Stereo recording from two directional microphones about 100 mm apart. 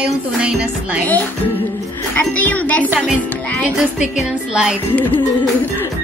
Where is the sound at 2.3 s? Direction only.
15° left (ahead or behind).